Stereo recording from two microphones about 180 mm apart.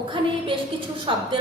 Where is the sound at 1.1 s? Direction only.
30° right (ahead or behind).